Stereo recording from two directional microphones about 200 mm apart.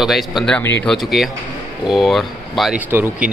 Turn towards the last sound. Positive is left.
turn(degrees=-10)  # may be behind; listen again after turning